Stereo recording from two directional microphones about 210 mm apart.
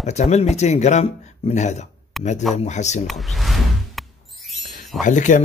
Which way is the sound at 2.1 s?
Centre (ahead or behind).